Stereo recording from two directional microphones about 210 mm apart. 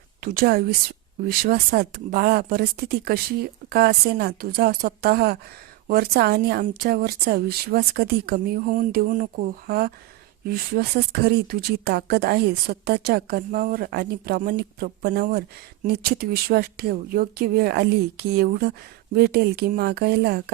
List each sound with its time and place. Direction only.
0.2 s a woman's voice: 45° right (ahead or behind)